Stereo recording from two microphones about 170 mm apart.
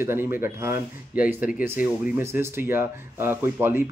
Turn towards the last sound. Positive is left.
turn(degrees=-10)  # may be behind; listen again after turning